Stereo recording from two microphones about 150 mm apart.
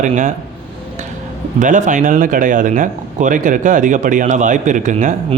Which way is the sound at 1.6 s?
55° right (ahead or behind).